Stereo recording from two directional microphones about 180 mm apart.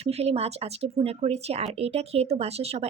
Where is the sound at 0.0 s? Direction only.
35° right (ahead or behind).